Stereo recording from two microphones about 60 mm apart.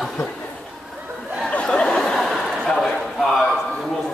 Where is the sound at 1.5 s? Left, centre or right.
Centre.